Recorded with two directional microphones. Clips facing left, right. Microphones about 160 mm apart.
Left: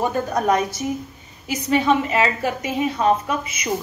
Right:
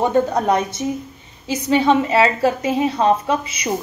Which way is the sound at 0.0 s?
25° right (ahead or behind).